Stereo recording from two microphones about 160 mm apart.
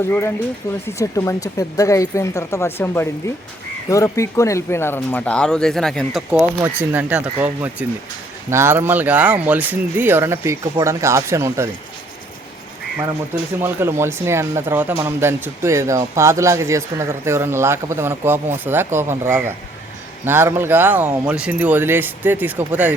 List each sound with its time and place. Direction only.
0.1 s speech: 15° left (ahead or behind)
6.3 s speech: 10° right (ahead or behind)
13.6 s speech: 15° right (ahead or behind)